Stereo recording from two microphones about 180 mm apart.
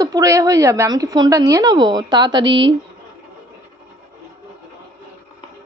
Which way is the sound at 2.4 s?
90° right.